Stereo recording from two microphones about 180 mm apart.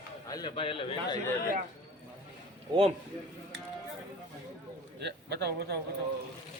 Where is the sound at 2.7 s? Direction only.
20° right (ahead or behind).